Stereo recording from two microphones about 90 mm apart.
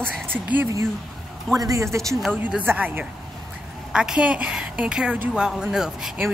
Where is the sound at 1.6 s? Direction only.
40° right (ahead or behind).